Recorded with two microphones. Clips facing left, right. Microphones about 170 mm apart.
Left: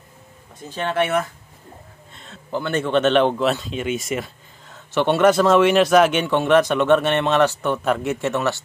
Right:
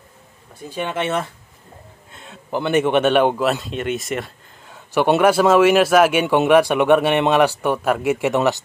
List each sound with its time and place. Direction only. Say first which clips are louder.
0.7 s speech: left 1 dB; 15° right (ahead or behind)
2.1 s speech: right 2 dB; 10° right (ahead or behind)